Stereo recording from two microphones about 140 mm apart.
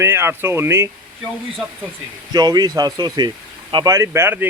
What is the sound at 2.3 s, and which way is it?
Speech, 30° right (ahead or behind).